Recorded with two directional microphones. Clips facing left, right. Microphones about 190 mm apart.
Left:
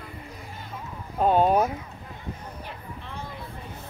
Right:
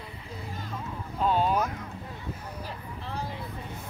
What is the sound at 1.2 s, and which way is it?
Speech, 50° left (ahead or behind).